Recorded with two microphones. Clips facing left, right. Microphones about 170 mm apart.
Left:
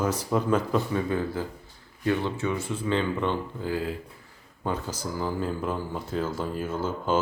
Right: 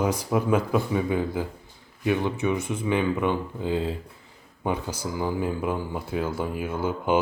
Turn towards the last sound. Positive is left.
turn(degrees=-15)  # may be behind; listen again after turning